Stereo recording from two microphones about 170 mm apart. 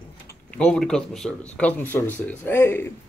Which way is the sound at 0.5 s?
5° left (ahead or behind).